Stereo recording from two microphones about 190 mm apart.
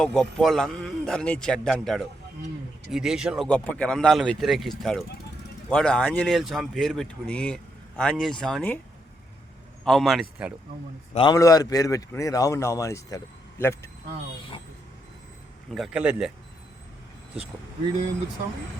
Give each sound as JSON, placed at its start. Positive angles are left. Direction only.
{"t": 0.0, "sound": "speech", "side_deg": 5}
{"t": 9.8, "sound": "speech", "side_deg": 0}
{"t": 11.1, "sound": "a man's voice", "side_deg": 30}
{"t": 15.7, "sound": "speech", "side_deg": -5}